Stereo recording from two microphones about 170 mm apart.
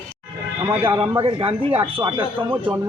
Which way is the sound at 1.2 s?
35° right (ahead or behind).